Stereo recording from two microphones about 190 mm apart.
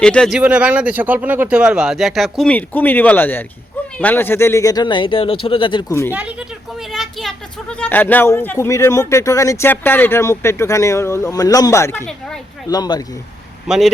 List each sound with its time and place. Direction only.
0.0 s speech: 5° left (ahead or behind); by 5.8 s 25° left (ahead or behind)
5.9 s speech: 15° left (ahead or behind)
6.7 s speech: centre (ahead or behind)
12.6 s speech: 20° left (ahead or behind)
13.7 s speech: centre (ahead or behind)